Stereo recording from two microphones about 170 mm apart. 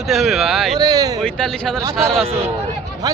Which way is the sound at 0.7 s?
20° right (ahead or behind).